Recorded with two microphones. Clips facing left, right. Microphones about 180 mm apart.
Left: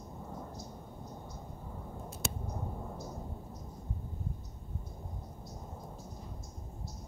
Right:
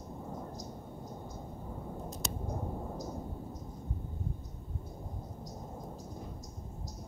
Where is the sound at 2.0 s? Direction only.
40° right (ahead or behind).